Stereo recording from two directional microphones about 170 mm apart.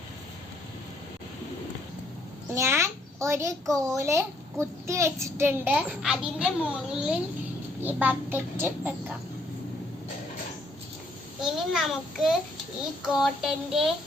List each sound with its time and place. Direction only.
2.6 s a child's voice: 15° right (ahead or behind)
11.4 s a child's voice: 5° right (ahead or behind)
13.1 s child singing: centre (ahead or behind)